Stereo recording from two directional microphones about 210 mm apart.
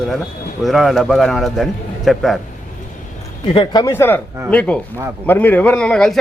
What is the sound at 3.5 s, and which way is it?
Speech, 15° left (ahead or behind).